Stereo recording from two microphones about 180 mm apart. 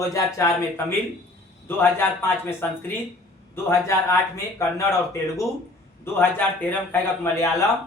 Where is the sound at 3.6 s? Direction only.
15° left (ahead or behind).